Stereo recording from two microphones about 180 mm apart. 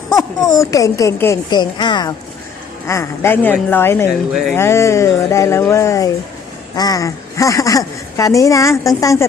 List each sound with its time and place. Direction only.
0.2 s speech: 20° left (ahead or behind)
4.3 s speech: centre (ahead or behind)
4.5 s speech: 15° left (ahead or behind)